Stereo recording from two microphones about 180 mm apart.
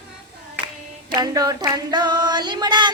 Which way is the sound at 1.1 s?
20° right (ahead or behind).